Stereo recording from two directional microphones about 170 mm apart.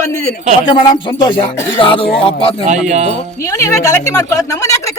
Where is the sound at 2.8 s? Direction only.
40° right (ahead or behind).